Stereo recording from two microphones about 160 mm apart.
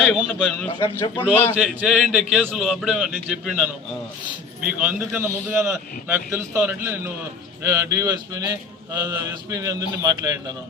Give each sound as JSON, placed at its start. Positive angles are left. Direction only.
{"t": 0.0, "sound": "a man's voice", "side_deg": 0}
{"t": 1.5, "sound": "a man's voice", "side_deg": 0}